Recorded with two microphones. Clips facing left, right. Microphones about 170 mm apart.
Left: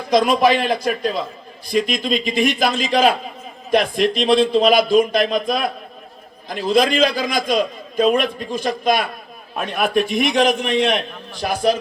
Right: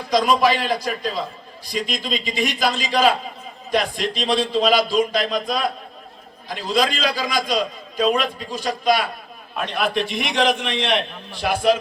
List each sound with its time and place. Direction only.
0.1 s a man's voice: 55° left (ahead or behind); by 11.8 s 40° left (ahead or behind)